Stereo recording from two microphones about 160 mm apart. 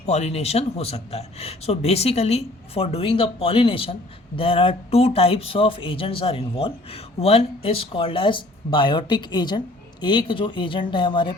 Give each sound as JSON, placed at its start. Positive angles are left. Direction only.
{"t": 0.0, "sound": "speech", "side_deg": 45}